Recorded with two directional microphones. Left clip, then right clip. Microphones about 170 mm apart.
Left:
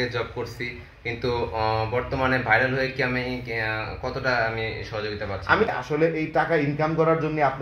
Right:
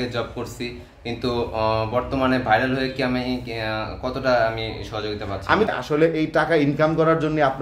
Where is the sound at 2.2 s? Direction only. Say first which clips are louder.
Right 1 dB; 10° right (ahead or behind).